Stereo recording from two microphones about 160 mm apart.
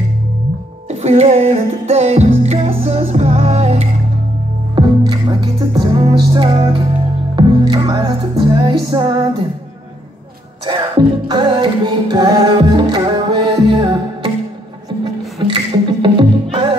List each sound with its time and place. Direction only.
0.8 s music: 40° right (ahead or behind)
4.7 s music: 30° right (ahead or behind)
10.7 s music: 30° right (ahead or behind)
15.4 s music: 30° right (ahead or behind)